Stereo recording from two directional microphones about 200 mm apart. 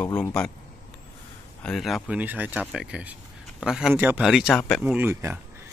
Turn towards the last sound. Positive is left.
turn(degrees=-10)  # may be behind; listen again after turning